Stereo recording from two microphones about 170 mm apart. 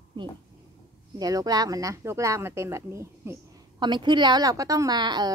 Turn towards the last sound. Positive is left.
turn(degrees=-25)  # may be behind; listen again after turning